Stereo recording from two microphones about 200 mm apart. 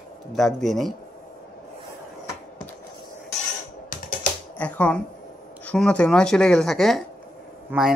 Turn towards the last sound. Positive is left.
turn(degrees=-5)  # may be behind; listen again after turning